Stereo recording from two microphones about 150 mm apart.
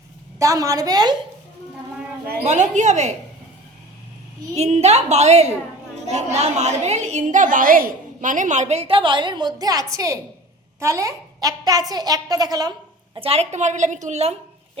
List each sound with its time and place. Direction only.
0.3 s a child's voice: 20° right (ahead or behind)
2.4 s a woman's voice: 50° right (ahead or behind)
4.5 s a woman's voice: 45° right (ahead or behind); by 12.7 s 25° right (ahead or behind)
13.1 s a woman's voice: 40° right (ahead or behind)